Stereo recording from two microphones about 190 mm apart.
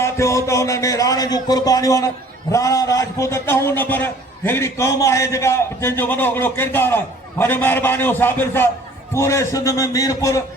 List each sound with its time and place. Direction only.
0.0 s a man's voice: 15° left (ahead or behind)